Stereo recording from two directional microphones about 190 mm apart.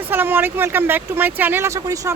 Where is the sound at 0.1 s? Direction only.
10° right (ahead or behind).